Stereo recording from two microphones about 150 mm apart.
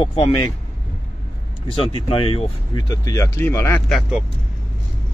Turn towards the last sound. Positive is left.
turn(degrees=0)  # may be behind; listen again after turning